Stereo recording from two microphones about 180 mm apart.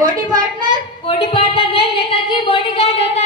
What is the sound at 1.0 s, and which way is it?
A woman's voice, 30° left (ahead or behind).